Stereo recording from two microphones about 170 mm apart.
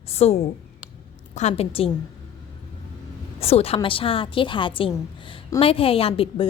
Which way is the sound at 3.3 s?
35° left (ahead or behind).